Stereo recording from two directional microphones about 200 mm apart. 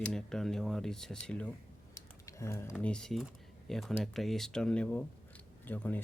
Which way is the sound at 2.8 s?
5° left (ahead or behind).